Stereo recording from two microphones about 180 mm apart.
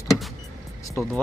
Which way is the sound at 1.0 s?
10° left (ahead or behind).